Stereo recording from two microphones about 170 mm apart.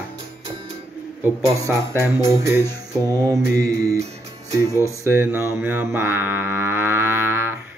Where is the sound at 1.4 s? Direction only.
15° right (ahead or behind).